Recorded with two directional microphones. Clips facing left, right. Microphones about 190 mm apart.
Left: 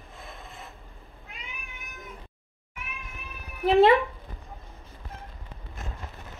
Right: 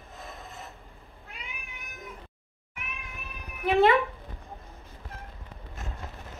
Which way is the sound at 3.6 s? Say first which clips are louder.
Left 3 dB; 35° left (ahead or behind).